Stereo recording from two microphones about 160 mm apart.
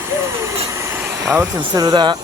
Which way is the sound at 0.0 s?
15° right (ahead or behind).